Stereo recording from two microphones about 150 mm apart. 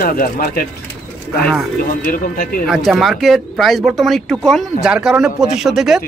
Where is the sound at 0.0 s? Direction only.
75° left (ahead or behind).